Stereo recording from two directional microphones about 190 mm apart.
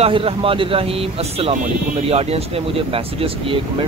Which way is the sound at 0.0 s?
30° right (ahead or behind).